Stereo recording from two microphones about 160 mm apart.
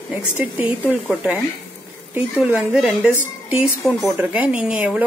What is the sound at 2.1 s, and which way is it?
Speech, 10° right (ahead or behind).